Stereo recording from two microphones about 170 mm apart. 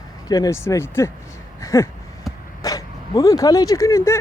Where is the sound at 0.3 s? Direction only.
20° left (ahead or behind).